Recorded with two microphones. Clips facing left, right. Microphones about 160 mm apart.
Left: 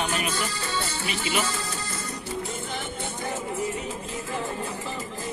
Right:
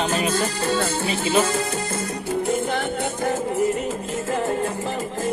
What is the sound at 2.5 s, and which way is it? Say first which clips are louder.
Music: right 10 dB; 70° right (ahead or behind).